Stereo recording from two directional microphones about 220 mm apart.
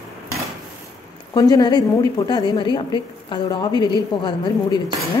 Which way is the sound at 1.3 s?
15° left (ahead or behind).